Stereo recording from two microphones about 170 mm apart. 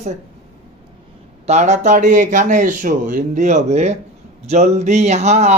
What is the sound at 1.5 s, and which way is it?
Speech, 45° right (ahead or behind).